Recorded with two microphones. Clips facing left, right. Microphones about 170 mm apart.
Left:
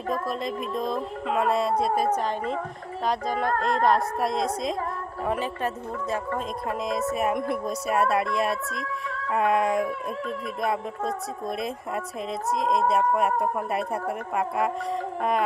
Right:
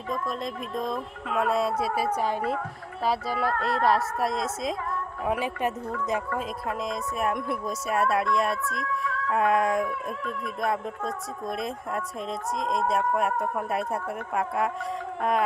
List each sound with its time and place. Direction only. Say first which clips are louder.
0.1 s a woman's voice: left 2 dB; centre (ahead or behind)
3.5 s a sound: left 2 dB; 45° left (ahead or behind)
3.8 s a woman's voice: even; centre (ahead or behind)
6.7 s a woman's voice: left 6 dB; centre (ahead or behind)